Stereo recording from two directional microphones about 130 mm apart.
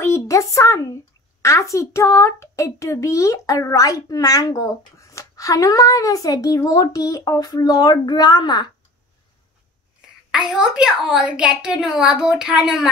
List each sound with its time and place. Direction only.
0.0 s a sound: 20° left (ahead or behind)
1.4 s a child's voice: 25° left (ahead or behind)
10.3 s a woman's voice: 5° right (ahead or behind)